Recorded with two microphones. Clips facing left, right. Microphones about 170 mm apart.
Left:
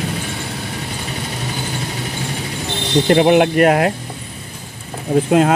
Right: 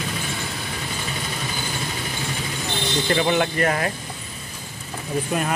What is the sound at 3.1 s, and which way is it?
Speech, 65° left (ahead or behind).